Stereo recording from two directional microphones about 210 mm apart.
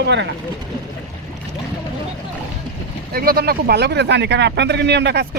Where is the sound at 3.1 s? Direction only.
45° right (ahead or behind).